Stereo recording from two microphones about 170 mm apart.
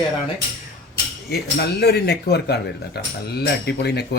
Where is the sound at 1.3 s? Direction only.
70° left (ahead or behind).